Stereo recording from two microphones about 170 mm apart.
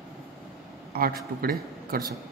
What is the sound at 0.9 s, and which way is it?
A man's voice, 60° right (ahead or behind).